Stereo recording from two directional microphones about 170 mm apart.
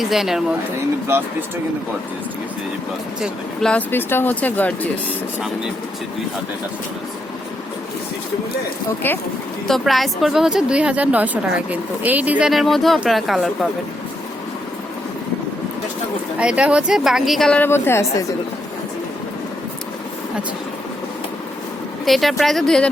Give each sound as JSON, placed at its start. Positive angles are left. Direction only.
{"t": 0.0, "sound": "a woman's voice", "side_deg": 0}
{"t": 1.0, "sound": "speech", "side_deg": -15}
{"t": 3.2, "sound": "a woman's voice", "side_deg": -5}
{"t": 3.7, "sound": "speech", "side_deg": 10}
{"t": 9.0, "sound": "speech", "side_deg": 10}
{"t": 9.6, "sound": "a woman's voice", "side_deg": 0}
{"t": 16.4, "sound": "a woman's voice", "side_deg": -5}
{"t": 22.0, "sound": "a woman's voice", "side_deg": 0}